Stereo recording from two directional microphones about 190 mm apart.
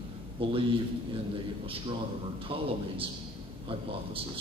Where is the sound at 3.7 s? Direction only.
30° right (ahead or behind).